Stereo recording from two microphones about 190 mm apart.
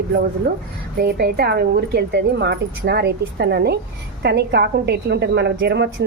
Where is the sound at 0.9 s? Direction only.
55° right (ahead or behind).